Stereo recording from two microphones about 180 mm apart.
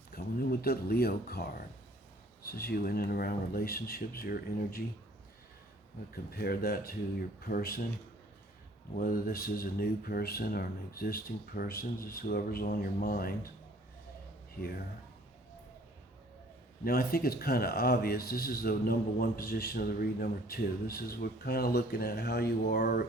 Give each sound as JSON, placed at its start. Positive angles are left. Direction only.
{"t": 0.1, "sound": "speech", "side_deg": 55}
{"t": 6.3, "sound": "speech", "side_deg": 60}
{"t": 9.0, "sound": "speech", "side_deg": 55}
{"t": 16.8, "sound": "speech", "side_deg": 60}